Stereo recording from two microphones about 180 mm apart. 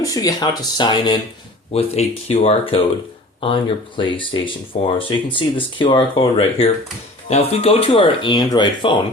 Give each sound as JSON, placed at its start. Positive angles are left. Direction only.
{"t": 0.0, "sound": "speech", "side_deg": 20}